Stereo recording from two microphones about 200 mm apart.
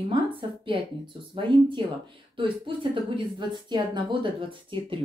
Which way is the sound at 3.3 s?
20° right (ahead or behind).